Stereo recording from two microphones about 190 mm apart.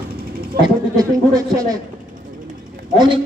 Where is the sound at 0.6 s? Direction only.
20° right (ahead or behind).